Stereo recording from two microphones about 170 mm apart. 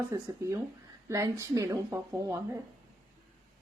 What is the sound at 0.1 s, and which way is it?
Speech, 20° right (ahead or behind).